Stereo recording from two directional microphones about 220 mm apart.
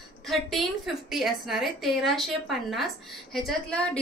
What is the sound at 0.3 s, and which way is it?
A woman's voice, centre (ahead or behind).